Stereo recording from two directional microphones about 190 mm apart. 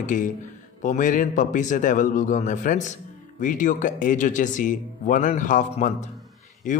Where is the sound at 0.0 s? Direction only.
45° left (ahead or behind).